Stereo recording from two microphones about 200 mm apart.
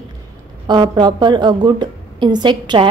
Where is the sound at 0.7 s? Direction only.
20° right (ahead or behind).